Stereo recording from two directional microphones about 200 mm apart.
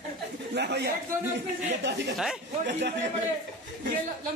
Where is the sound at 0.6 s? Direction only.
55° right (ahead or behind).